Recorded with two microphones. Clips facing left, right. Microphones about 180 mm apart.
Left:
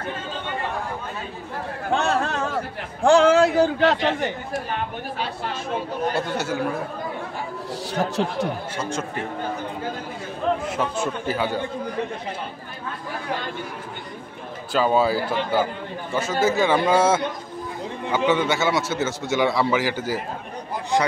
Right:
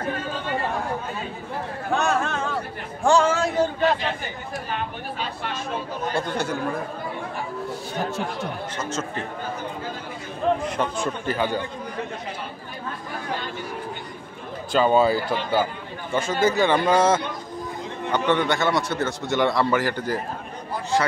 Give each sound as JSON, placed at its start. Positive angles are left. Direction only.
{"t": 1.9, "sound": "chatter", "side_deg": 30}
{"t": 3.0, "sound": "a man's voice", "side_deg": 65}
{"t": 6.1, "sound": "speech", "side_deg": 5}
{"t": 8.7, "sound": "speech", "side_deg": 15}
{"t": 10.8, "sound": "a man's voice", "side_deg": 5}
{"t": 14.7, "sound": "a man's voice", "side_deg": 5}